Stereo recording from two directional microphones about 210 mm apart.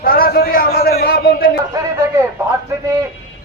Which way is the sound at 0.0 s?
45° left (ahead or behind).